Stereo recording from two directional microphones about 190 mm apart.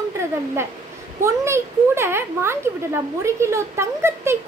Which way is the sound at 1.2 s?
15° right (ahead or behind).